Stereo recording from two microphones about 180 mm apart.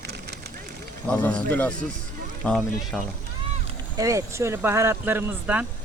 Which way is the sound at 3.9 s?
15° right (ahead or behind).